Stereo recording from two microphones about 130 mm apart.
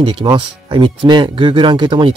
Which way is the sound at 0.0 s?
40° right (ahead or behind).